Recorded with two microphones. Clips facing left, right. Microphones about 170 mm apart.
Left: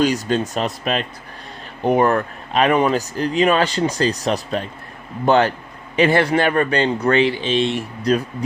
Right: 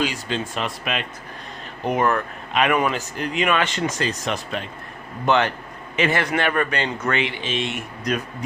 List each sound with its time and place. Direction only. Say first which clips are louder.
0.0 s speech: left 7 dB; 40° left (ahead or behind)